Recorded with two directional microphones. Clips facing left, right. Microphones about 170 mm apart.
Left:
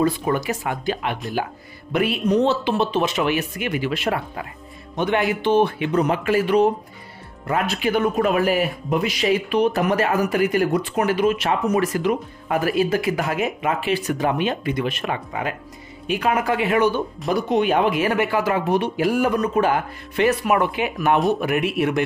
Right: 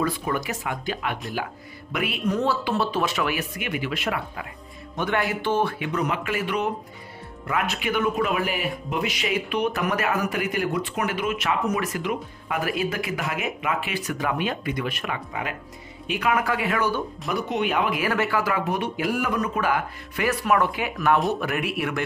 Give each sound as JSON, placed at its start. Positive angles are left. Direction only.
{"t": 0.0, "sound": "speech", "side_deg": 30}
{"t": 4.9, "sound": "speech", "side_deg": 20}
{"t": 5.9, "sound": "speech", "side_deg": 35}
{"t": 16.3, "sound": "speech", "side_deg": 25}
{"t": 17.3, "sound": "speech", "side_deg": 35}